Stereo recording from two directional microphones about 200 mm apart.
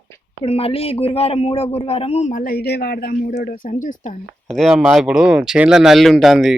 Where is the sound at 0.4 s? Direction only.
30° left (ahead or behind).